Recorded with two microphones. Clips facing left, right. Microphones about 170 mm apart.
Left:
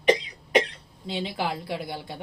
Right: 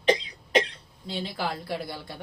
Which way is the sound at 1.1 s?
20° left (ahead or behind).